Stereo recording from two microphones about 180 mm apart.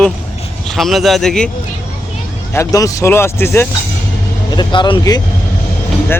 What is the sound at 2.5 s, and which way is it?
Speech, 20° left (ahead or behind).